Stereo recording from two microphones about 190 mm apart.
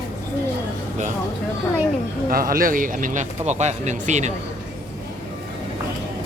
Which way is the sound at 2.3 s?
50° right (ahead or behind).